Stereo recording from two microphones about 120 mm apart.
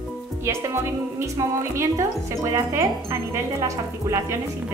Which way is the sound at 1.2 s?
25° right (ahead or behind).